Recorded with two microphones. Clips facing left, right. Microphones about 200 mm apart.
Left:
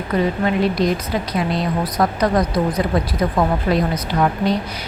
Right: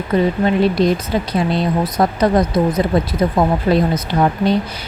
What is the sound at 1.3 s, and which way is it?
A woman's voice, 25° right (ahead or behind).